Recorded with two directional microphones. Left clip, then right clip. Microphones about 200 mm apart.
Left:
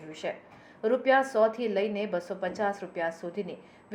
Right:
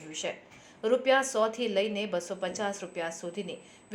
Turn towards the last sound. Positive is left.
turn(degrees=-25)  # may be behind; listen again after turning